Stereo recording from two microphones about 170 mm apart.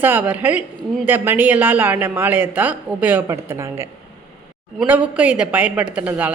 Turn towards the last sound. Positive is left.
turn(degrees=-10)  # may be behind; listen again after turning